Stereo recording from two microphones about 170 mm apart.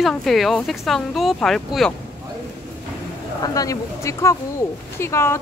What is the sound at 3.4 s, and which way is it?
Speech, 20° left (ahead or behind).